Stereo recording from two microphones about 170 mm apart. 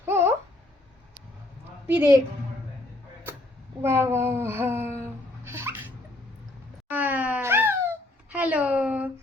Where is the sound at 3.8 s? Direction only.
15° right (ahead or behind).